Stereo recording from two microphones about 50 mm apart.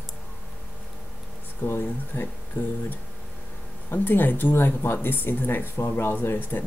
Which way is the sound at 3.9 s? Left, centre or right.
Left.